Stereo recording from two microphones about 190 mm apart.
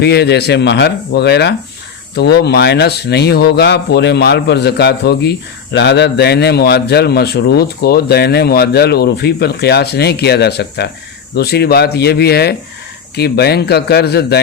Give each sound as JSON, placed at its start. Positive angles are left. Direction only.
{"t": 0.0, "sound": "speech", "side_deg": 60}